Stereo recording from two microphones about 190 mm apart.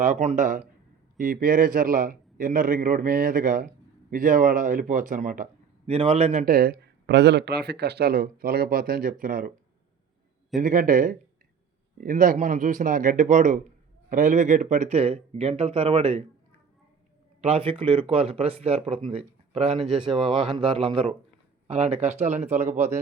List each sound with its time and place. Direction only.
0.0 s speech: 40° right (ahead or behind)
5.9 s speech: 30° right (ahead or behind)
6.4 s speech: 50° right (ahead or behind)
10.6 s speech: 45° right (ahead or behind); by 16.2 s 30° right (ahead or behind)
17.4 s speech: 30° right (ahead or behind)
20.1 s speech: centre (ahead or behind)
20.5 s a man's voice: 30° right (ahead or behind)